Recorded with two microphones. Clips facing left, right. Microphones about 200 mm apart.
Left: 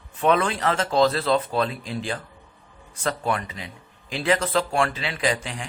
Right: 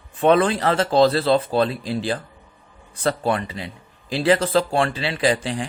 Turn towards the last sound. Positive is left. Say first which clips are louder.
# right 5 dB
turn(degrees=-35)  # may be behind; listen again after turning